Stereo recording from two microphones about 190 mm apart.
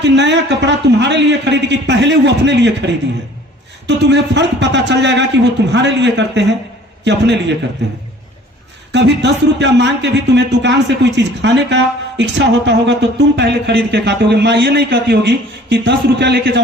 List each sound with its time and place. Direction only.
0.0 s a man's voice: 65° right (ahead or behind)
8.9 s a man's voice: 65° right (ahead or behind)